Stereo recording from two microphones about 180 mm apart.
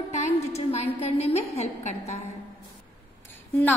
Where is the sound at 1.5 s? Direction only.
35° left (ahead or behind).